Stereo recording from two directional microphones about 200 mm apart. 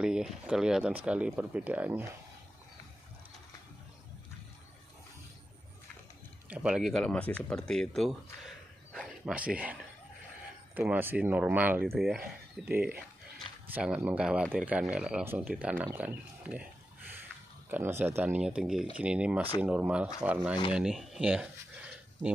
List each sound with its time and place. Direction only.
0.0 s speech: 5° right (ahead or behind)
6.5 s speech: 5° right (ahead or behind)
8.9 s a sound: 5° right (ahead or behind)
10.7 s speech: 10° right (ahead or behind)
13.7 s speech: 5° right (ahead or behind)
17.6 s speech: 10° right (ahead or behind)
20.7 s a sound: centre (ahead or behind)